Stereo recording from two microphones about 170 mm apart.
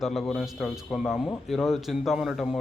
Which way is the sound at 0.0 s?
Centre (ahead or behind).